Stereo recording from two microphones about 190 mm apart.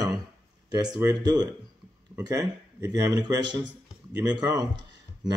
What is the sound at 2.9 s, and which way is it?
Speech, 20° right (ahead or behind).